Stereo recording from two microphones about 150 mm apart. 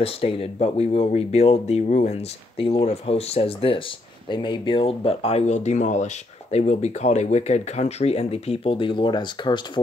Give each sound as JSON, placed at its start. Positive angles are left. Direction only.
{"t": 0.0, "sound": "speech", "side_deg": 40}